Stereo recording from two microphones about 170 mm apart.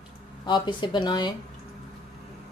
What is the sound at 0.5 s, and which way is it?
Speech, 25° left (ahead or behind).